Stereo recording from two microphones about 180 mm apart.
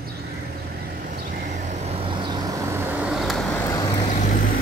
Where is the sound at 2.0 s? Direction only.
25° right (ahead or behind).